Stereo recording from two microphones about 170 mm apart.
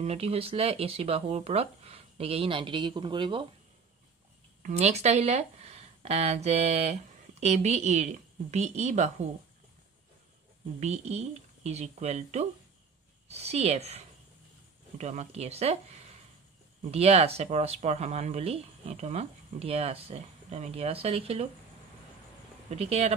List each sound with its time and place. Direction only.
0.0 s speech: 35° right (ahead or behind)
4.6 s speech: 40° right (ahead or behind)
10.8 s speech: 40° right (ahead or behind)
22.7 s speech: 40° right (ahead or behind)